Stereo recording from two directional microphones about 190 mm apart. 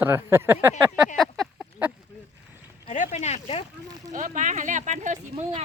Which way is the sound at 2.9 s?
35° left (ahead or behind).